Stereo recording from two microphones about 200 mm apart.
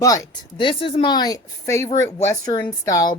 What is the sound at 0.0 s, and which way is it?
Speech, 15° left (ahead or behind).